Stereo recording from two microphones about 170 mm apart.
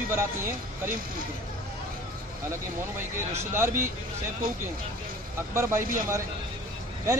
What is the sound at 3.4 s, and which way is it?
Speech, 15° right (ahead or behind).